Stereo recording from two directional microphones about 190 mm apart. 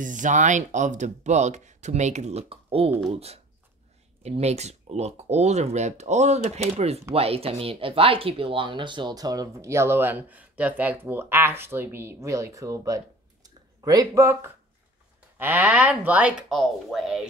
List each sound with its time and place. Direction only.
0.0 s speech: 40° right (ahead or behind); by 17.3 s centre (ahead or behind)